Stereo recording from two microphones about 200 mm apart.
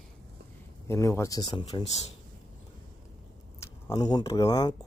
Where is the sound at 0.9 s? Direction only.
15° left (ahead or behind); by 2.1 s 30° left (ahead or behind).